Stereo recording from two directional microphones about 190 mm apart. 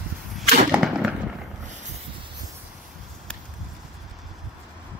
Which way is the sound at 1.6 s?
40° right (ahead or behind).